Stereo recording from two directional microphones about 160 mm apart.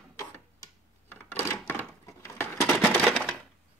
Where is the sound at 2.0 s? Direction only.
20° left (ahead or behind).